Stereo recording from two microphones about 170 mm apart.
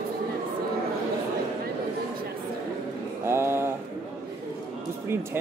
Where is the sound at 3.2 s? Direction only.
15° right (ahead or behind).